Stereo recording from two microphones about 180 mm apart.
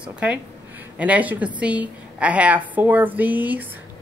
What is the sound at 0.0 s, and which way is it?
A woman's voice, 5° right (ahead or behind).